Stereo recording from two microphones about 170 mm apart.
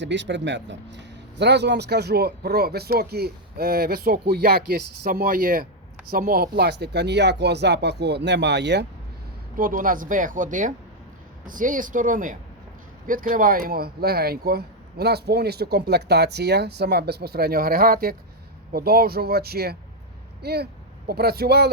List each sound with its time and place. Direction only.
0.0 s speech: 90° right
9.6 s speech: 55° right (ahead or behind)